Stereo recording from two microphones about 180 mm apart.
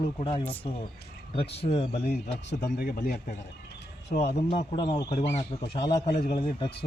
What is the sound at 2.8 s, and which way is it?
Speech, 50° left (ahead or behind).